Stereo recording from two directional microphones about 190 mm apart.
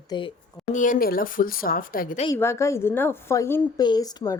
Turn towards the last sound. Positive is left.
turn(degrees=20)  # may be behind; listen again after turning